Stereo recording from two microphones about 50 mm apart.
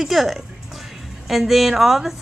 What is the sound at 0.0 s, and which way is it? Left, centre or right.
Speech, centre.